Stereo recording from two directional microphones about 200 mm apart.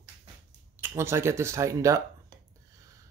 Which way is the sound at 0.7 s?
10° right (ahead or behind).